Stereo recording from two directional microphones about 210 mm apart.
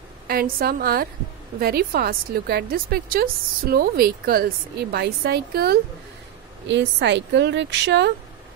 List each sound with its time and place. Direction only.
0.3 s a woman's voice: 45° right (ahead or behind)